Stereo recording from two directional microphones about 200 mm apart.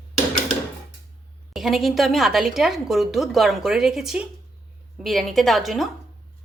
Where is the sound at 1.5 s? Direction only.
Centre (ahead or behind).